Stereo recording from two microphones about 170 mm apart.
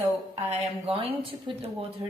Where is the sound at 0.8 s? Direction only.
35° right (ahead or behind).